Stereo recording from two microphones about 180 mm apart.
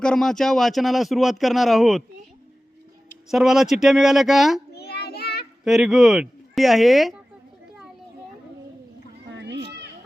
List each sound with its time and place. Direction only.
0.0 s speech: 5° left (ahead or behind)
3.2 s speech: centre (ahead or behind)
4.7 s child singing: 65° left (ahead or behind)
5.6 s speech: centre (ahead or behind)
9.3 s a sound: 70° right (ahead or behind)